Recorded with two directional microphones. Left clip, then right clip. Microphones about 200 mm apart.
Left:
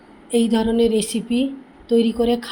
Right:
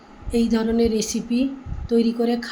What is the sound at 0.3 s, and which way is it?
Speech, 15° left (ahead or behind).